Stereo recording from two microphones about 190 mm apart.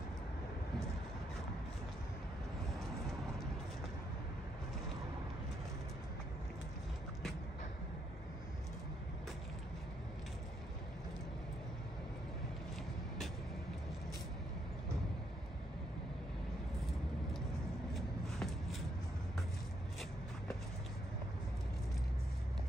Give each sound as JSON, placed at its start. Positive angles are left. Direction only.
{"t": 17.9, "sound": "shuffle", "side_deg": 0}